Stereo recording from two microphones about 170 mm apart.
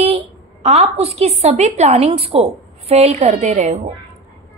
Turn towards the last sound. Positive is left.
turn(degrees=-40)  # may be behind; listen again after turning